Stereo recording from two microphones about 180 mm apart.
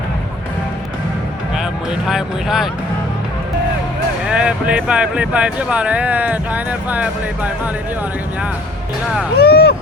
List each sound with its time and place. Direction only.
2.0 s speech: centre (ahead or behind)
4.3 s speech: 5° right (ahead or behind)
9.4 s speech: 60° left (ahead or behind)